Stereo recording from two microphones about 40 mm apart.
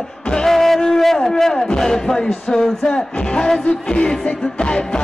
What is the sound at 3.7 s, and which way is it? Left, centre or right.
Speech, left.